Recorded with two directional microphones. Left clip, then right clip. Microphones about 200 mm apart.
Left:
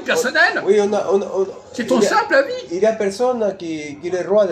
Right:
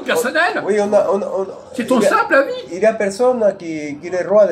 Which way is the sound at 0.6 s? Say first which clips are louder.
Right 2 dB; 5° left (ahead or behind).